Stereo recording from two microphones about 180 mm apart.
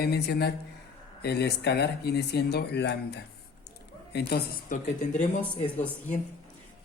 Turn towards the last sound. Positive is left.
turn(degrees=10)  # may be behind; listen again after turning